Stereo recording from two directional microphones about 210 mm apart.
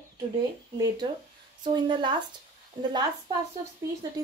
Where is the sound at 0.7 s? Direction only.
20° right (ahead or behind).